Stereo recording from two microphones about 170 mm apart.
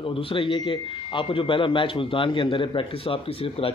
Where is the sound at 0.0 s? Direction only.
30° left (ahead or behind).